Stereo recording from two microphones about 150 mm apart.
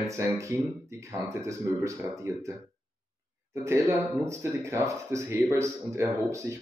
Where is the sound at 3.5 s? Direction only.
20° right (ahead or behind).